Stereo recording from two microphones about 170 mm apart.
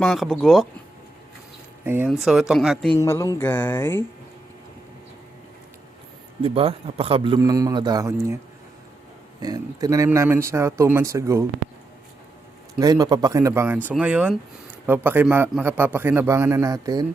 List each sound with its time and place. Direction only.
0.0 s speech: centre (ahead or behind)
1.8 s speech: 10° right (ahead or behind)
2.9 s speech: 15° left (ahead or behind)
6.4 s a man's voice: 35° right (ahead or behind); by 8.4 s 20° right (ahead or behind)
9.4 s a man's voice: 20° right (ahead or behind)
12.8 s a man's voice: 20° right (ahead or behind)